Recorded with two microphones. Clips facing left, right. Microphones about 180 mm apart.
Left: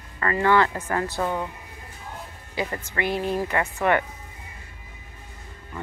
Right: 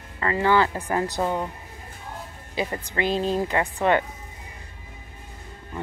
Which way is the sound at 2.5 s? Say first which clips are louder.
Right 1 dB; 20° right (ahead or behind).